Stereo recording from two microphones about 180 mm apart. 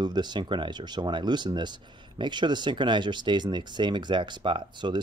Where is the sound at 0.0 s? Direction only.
25° right (ahead or behind).